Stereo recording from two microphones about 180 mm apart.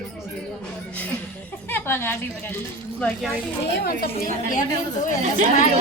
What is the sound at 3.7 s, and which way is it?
Speech, 55° left (ahead or behind).